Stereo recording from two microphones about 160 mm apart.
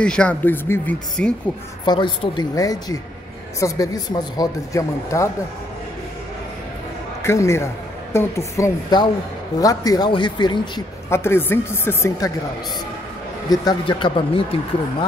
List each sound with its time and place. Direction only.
0.0 s a woman's voice: 5° left (ahead or behind)
1.9 s speech: 30° left (ahead or behind)
7.2 s a woman's voice: 15° left (ahead or behind)
11.1 s a woman's voice: 15° left (ahead or behind)
13.5 s speech: 25° left (ahead or behind)